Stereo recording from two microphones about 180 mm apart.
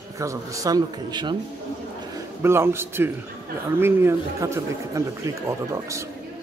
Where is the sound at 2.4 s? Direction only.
15° right (ahead or behind).